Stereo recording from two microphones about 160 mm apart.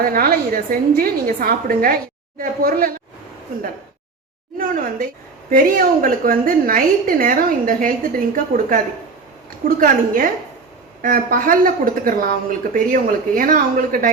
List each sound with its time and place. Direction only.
0.0 s a woman's voice: 70° right (ahead or behind)
4.5 s a woman's voice: 60° right (ahead or behind)